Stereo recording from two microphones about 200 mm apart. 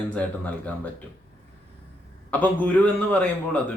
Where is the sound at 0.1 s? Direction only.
5° left (ahead or behind).